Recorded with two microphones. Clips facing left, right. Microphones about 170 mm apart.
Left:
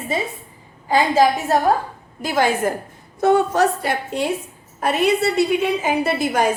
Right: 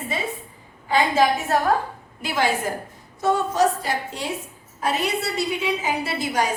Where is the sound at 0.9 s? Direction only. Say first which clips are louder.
Left 3 dB; 40° left (ahead or behind).